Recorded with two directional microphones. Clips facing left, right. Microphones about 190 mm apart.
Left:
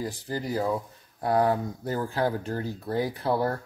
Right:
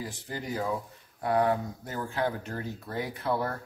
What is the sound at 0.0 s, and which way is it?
Speech, 35° left (ahead or behind).